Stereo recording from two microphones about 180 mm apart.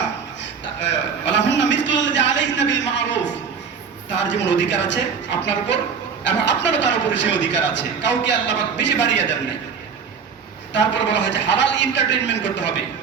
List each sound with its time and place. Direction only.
0.9 s a sound: 80° left
4.2 s a man's voice: 85° left
10.7 s a man's voice: 80° left